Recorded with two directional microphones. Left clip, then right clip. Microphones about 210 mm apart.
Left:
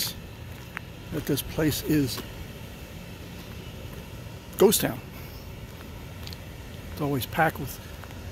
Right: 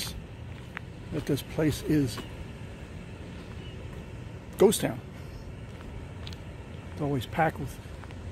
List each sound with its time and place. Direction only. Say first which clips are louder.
0.7 s speech: left 2 dB; 5° left (ahead or behind)
4.6 s speech: left 2 dB; 5° left (ahead or behind)
7.0 s speech: left 3 dB; 15° left (ahead or behind)